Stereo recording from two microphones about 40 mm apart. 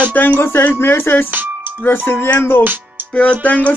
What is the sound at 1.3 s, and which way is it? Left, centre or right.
Music, right.